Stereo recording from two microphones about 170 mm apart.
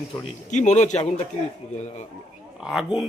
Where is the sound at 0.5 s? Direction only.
45° left (ahead or behind).